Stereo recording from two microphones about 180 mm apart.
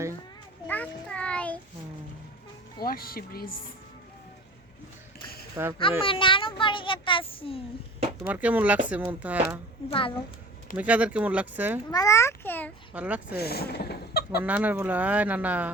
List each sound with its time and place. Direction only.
0.7 s a sound: 5° left (ahead or behind)
2.8 s speech: 55° left (ahead or behind)
5.6 s speech: 15° right (ahead or behind)
6.0 s a child's voice: 30° left (ahead or behind)
8.2 s speech: 10° right (ahead or behind)
9.9 s a child's voice: 30° left (ahead or behind)
10.8 s speech: 10° right (ahead or behind)
11.9 s babbling: 20° left (ahead or behind)
12.9 s speech: 10° right (ahead or behind)
13.4 s speech: 60° left (ahead or behind)
14.4 s speech: 10° right (ahead or behind)